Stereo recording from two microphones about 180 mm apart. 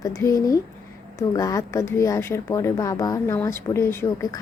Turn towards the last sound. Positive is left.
turn(degrees=15)  # may be behind; listen again after turning